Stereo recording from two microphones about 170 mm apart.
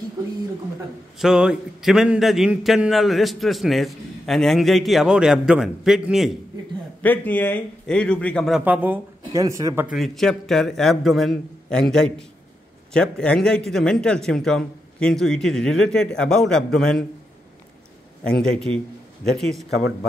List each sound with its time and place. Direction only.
1.1 s a man's voice: 5° right (ahead or behind)
7.0 s a man's voice: 10° left (ahead or behind); by 9.8 s 20° right (ahead or behind)
9.9 s a man's voice: centre (ahead or behind)
18.2 s a man's voice: 5° left (ahead or behind)